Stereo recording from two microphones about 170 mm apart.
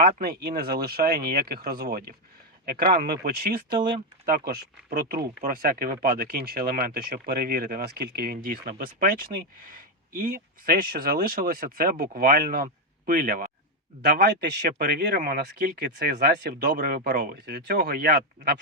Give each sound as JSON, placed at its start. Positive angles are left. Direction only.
{"t": 0.0, "sound": "speech", "side_deg": -65}
{"t": 14.1, "sound": "speech", "side_deg": -75}
{"t": 16.7, "sound": "speech", "side_deg": -50}
{"t": 17.4, "sound": "speech", "side_deg": -75}